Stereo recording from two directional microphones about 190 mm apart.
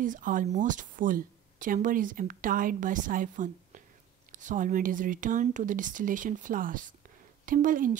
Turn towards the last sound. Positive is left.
turn(degrees=-45)  # may be behind; listen again after turning